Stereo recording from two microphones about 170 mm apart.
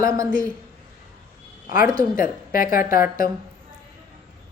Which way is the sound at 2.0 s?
55° left (ahead or behind).